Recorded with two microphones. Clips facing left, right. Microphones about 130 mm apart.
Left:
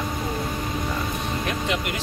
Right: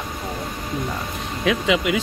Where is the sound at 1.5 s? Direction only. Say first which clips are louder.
Right 10 dB; 90° right.